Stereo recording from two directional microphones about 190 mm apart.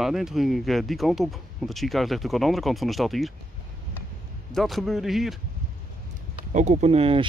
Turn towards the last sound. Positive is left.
turn(degrees=-30)  # may be behind; listen again after turning